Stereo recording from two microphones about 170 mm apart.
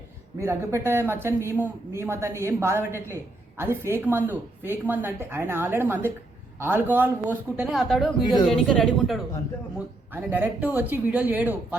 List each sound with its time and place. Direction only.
0.3 s a man's voice: 15° right (ahead or behind); by 9.2 s centre (ahead or behind)
10.1 s a man's voice: 10° right (ahead or behind)